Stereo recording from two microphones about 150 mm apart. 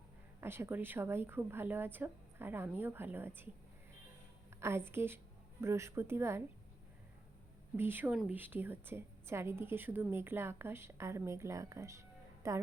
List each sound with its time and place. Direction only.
0.4 s a woman's voice: 15° right (ahead or behind)
4.9 s speech: 15° right (ahead or behind)
7.8 s a woman's voice: 15° right (ahead or behind)